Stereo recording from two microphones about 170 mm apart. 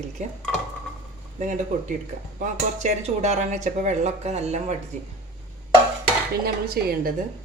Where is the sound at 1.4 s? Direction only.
50° right (ahead or behind).